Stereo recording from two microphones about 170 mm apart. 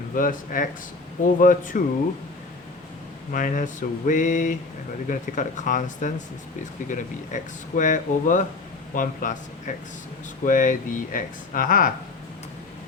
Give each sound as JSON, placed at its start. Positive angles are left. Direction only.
{"t": 0.1, "sound": "speech", "side_deg": 55}
{"t": 3.3, "sound": "speech", "side_deg": 50}
{"t": 10.4, "sound": "speech", "side_deg": 50}